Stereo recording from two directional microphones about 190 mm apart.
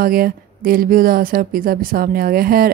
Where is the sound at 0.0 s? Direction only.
50° right (ahead or behind).